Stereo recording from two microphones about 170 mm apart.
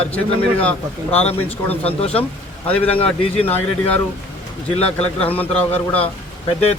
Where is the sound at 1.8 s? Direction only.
35° left (ahead or behind).